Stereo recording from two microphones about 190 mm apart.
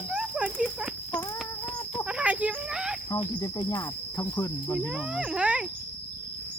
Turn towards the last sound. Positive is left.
turn(degrees=-5)  # may be behind; listen again after turning